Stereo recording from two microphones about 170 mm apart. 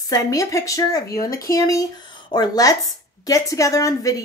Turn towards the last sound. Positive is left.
turn(degrees=20)  # may be behind; listen again after turning